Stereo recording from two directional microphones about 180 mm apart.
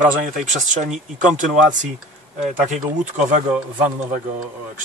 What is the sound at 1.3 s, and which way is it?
Speech, 45° right (ahead or behind).